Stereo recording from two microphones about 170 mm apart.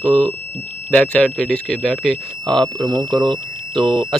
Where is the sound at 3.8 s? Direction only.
5° left (ahead or behind).